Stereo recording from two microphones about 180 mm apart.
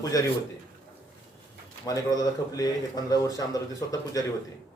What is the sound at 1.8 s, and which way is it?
Speech, 20° left (ahead or behind).